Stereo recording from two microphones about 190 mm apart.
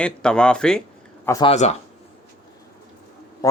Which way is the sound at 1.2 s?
15° left (ahead or behind).